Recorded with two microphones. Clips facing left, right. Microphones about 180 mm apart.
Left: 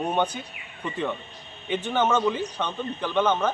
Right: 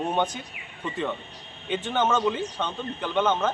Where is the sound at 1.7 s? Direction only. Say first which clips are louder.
Left 1 dB; 10° left (ahead or behind).